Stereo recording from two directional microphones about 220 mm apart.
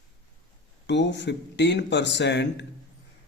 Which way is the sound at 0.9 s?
55° left (ahead or behind).